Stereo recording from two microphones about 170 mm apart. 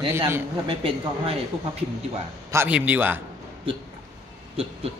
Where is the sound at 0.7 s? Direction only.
35° right (ahead or behind).